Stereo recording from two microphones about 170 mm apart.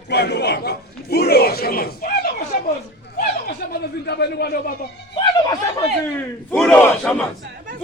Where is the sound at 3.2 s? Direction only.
65° left (ahead or behind).